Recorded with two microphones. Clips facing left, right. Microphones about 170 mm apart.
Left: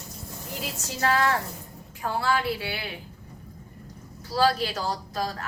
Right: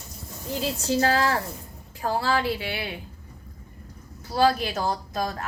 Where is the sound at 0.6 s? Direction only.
30° right (ahead or behind).